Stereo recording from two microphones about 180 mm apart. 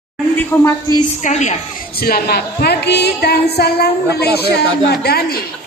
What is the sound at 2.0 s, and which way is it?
A woman's voice, 55° left (ahead or behind).